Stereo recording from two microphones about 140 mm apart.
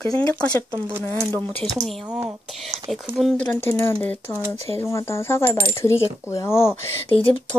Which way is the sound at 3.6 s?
15° left (ahead or behind).